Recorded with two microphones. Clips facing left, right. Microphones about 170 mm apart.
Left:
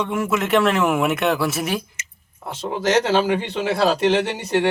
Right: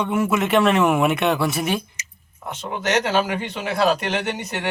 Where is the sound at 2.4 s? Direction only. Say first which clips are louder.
Left 3 dB; 30° left (ahead or behind).